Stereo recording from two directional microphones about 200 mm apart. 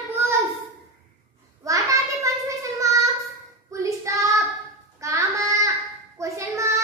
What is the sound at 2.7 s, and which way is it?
Child singing, 15° right (ahead or behind).